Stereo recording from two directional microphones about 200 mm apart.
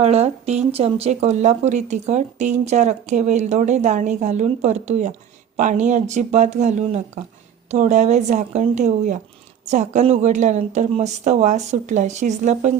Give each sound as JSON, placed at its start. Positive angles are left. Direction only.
{"t": 0.0, "sound": "speech", "side_deg": -30}